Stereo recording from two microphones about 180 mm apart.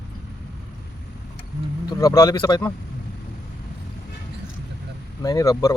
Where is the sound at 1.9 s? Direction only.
20° left (ahead or behind).